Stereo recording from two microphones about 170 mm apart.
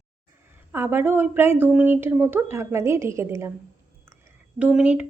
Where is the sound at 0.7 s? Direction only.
15° right (ahead or behind).